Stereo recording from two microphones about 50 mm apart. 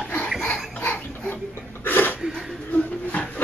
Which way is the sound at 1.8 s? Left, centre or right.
Left.